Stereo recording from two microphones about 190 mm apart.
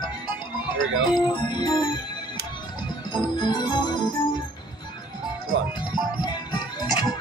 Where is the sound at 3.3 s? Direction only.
20° left (ahead or behind).